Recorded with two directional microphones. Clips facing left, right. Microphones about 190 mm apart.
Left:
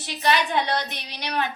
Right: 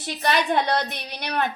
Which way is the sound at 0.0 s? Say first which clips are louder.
Even; 50° right (ahead or behind).